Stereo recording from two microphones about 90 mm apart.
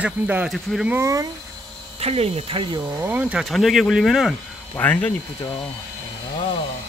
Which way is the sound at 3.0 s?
20° right (ahead or behind).